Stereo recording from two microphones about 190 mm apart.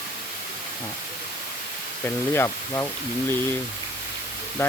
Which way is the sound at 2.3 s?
15° left (ahead or behind).